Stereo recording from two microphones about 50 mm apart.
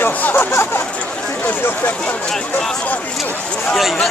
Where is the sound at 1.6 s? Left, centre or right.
Left.